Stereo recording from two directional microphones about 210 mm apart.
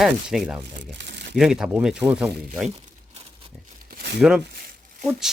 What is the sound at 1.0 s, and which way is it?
Crumpling, 55° right (ahead or behind).